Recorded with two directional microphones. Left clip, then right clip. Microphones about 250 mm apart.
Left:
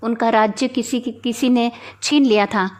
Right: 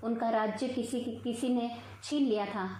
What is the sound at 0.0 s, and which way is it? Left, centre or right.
Speech, left.